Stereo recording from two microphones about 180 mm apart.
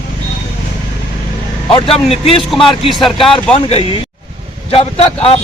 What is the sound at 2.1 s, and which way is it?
Speech, 35° left (ahead or behind).